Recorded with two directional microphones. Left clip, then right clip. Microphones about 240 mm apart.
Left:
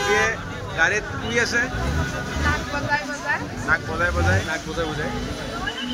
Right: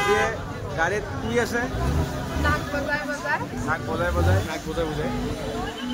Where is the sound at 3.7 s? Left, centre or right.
Centre.